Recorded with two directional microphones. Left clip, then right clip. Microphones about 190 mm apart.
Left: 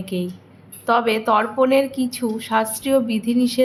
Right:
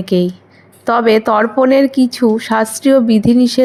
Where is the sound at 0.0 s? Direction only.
40° right (ahead or behind).